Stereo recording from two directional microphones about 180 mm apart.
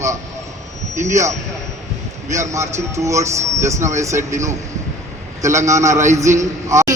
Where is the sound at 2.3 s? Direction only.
15° right (ahead or behind).